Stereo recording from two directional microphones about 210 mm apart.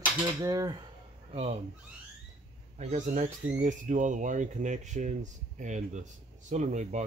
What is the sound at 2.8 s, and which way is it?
Speech, 35° right (ahead or behind).